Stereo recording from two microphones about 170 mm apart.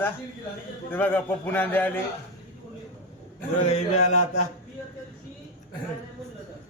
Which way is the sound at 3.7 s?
40° left (ahead or behind).